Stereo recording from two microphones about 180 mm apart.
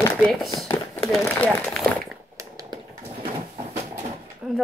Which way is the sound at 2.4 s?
20° right (ahead or behind).